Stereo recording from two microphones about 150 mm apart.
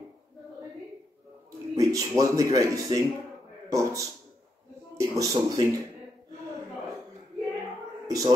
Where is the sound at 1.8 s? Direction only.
25° right (ahead or behind).